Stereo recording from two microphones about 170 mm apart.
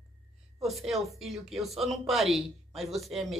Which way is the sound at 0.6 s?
Centre (ahead or behind).